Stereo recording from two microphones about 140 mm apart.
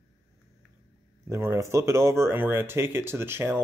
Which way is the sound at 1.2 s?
20° right (ahead or behind).